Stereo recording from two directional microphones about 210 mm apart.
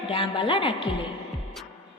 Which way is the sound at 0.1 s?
25° left (ahead or behind).